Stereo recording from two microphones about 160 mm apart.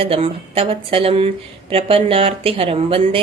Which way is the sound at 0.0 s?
35° right (ahead or behind).